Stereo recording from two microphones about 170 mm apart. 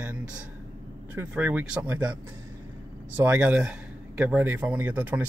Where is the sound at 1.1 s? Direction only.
10° right (ahead or behind).